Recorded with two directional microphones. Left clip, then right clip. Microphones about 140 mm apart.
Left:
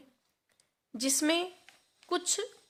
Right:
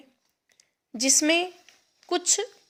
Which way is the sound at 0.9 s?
20° right (ahead or behind).